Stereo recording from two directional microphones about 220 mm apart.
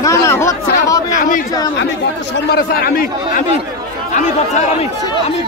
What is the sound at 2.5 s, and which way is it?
Speech, 45° left (ahead or behind).